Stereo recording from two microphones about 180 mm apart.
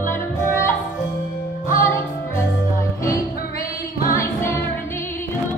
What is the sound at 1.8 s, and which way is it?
Music, 15° left (ahead or behind).